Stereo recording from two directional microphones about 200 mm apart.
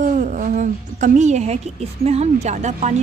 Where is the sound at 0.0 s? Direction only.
40° right (ahead or behind).